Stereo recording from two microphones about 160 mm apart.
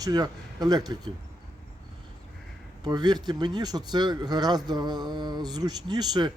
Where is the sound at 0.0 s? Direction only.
25° right (ahead or behind).